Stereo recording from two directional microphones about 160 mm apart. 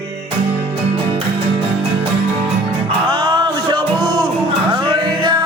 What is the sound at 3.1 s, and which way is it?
Music, 30° right (ahead or behind).